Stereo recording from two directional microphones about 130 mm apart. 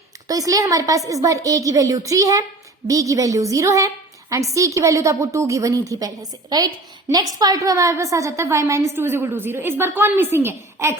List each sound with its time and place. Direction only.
0.3 s a woman's voice: 25° right (ahead or behind)
7.3 s a woman's voice: 30° right (ahead or behind)